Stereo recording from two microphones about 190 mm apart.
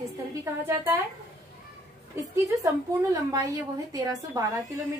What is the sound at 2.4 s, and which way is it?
A woman's voice, 15° right (ahead or behind).